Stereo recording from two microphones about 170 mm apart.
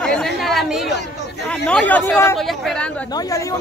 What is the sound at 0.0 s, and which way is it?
Chatter, 5° left (ahead or behind).